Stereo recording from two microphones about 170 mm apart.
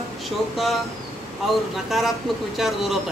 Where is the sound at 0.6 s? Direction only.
Centre (ahead or behind).